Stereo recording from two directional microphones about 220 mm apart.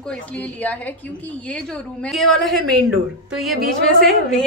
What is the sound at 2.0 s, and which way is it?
A woman's voice, centre (ahead or behind).